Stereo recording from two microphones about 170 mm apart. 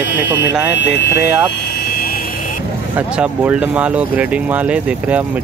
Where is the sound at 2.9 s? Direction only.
10° right (ahead or behind).